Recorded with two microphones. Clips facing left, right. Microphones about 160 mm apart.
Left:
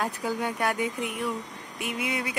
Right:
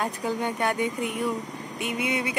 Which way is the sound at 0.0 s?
5° left (ahead or behind).